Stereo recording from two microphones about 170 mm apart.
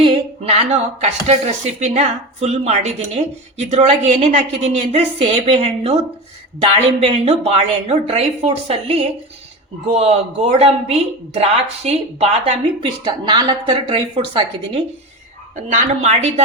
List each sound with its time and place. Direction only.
0.0 s speech: 30° right (ahead or behind)
12.8 s a woman's voice: 25° right (ahead or behind)
15.5 s speech: 40° right (ahead or behind)